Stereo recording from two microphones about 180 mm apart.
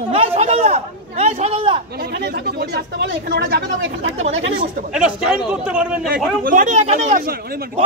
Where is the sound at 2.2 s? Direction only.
65° right (ahead or behind).